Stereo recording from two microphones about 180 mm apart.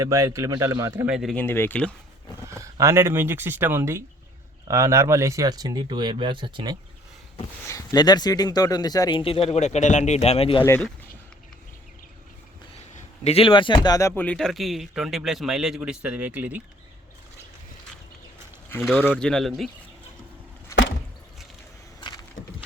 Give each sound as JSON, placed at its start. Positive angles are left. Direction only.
{"t": 0.0, "sound": "speech", "side_deg": -15}
{"t": 1.1, "sound": "speech", "side_deg": 0}
{"t": 2.5, "sound": "speech", "side_deg": -15}
{"t": 7.7, "sound": "a man's voice", "side_deg": 20}
{"t": 10.6, "sound": "speech", "side_deg": 10}
{"t": 13.0, "sound": "a man's voice", "side_deg": 35}
{"t": 14.2, "sound": "speech", "side_deg": 5}
{"t": 18.8, "sound": "speech", "side_deg": 0}
{"t": 22.4, "sound": "a sound", "side_deg": 90}